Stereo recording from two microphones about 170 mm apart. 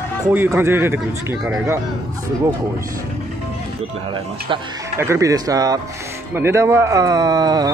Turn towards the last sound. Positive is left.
turn(degrees=-25)  # may be behind; listen again after turning